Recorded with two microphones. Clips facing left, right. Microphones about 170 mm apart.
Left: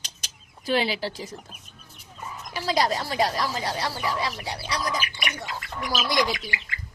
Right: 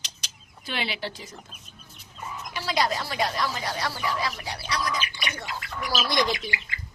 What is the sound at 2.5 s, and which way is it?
Speech, 35° left (ahead or behind).